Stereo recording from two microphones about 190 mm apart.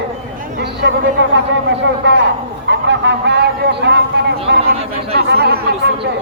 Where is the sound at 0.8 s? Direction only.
65° right (ahead or behind).